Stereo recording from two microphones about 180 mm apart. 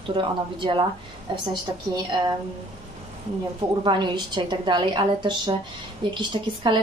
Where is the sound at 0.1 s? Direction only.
25° right (ahead or behind).